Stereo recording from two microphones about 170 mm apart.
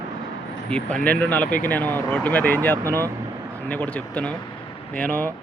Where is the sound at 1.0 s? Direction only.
5° left (ahead or behind).